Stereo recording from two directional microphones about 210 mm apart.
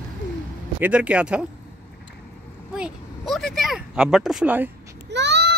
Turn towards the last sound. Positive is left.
turn(degrees=-55)  # may be behind; listen again after turning